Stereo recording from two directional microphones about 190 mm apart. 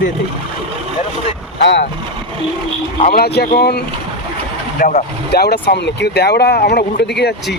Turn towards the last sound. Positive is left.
turn(degrees=60)  # may be behind; listen again after turning